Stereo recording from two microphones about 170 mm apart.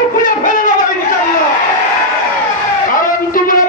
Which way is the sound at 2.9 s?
55° left (ahead or behind).